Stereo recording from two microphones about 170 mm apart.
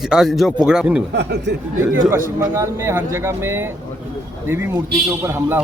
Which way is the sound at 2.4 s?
15° right (ahead or behind).